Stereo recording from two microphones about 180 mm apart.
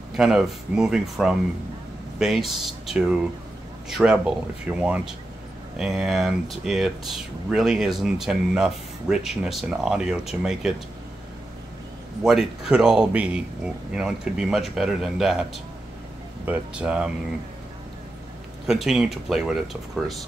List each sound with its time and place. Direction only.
0.2 s speech: centre (ahead or behind)
12.2 s speech: 5° right (ahead or behind)
18.7 s speech: centre (ahead or behind)